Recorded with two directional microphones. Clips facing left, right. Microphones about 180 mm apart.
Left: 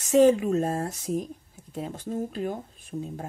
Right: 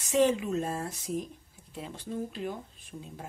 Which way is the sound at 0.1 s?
45° left (ahead or behind).